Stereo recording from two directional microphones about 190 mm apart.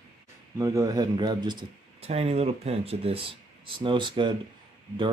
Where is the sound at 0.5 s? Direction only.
15° right (ahead or behind).